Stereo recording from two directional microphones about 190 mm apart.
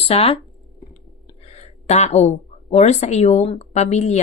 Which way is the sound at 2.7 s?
35° left (ahead or behind).